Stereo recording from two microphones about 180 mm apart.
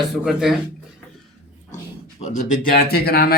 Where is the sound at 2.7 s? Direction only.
55° left (ahead or behind).